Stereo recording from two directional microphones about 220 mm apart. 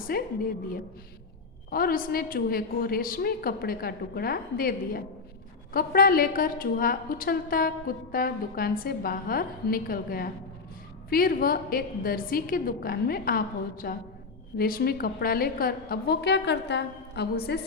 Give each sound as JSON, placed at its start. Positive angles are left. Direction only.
{"t": 0.1, "sound": "a woman's voice", "side_deg": 40}
{"t": 1.7, "sound": "a woman's voice", "side_deg": 40}